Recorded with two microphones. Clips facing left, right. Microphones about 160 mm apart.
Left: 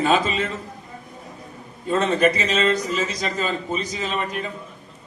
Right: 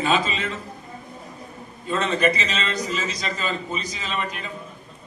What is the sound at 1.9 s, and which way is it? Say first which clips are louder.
A man's voice: left 3 dB; 50° left (ahead or behind).